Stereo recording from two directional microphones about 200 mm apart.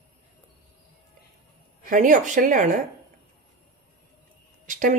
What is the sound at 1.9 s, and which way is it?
Speech, 40° right (ahead or behind).